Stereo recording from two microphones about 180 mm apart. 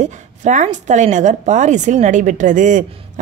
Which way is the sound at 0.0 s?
40° right (ahead or behind).